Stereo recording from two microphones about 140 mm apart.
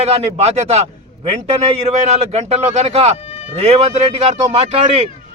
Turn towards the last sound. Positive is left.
turn(degrees=-50)  # may be behind; listen again after turning